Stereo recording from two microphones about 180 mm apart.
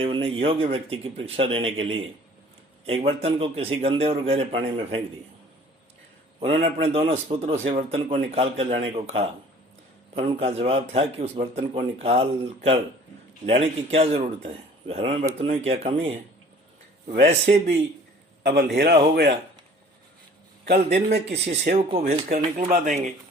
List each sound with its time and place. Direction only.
0.0 s a man's voice: 30° right (ahead or behind)
6.4 s a man's voice: 35° right (ahead or behind)
18.4 s a man's voice: 60° right (ahead or behind)
20.7 s a man's voice: 60° right (ahead or behind)
21.4 s a man's voice: 40° right (ahead or behind)